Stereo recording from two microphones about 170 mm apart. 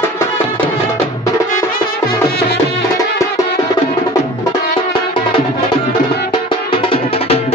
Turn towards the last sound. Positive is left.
turn(degrees=35)  # may be behind; listen again after turning